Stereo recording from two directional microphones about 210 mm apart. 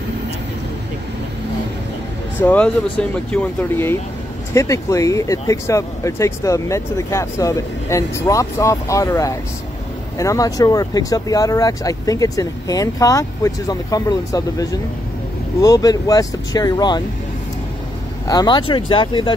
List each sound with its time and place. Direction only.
2.4 s speech: 5° left (ahead or behind)
18.2 s speech: 20° left (ahead or behind)